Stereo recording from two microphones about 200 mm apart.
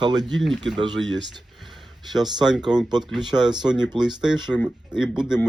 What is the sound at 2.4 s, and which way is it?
Speech, 5° right (ahead or behind).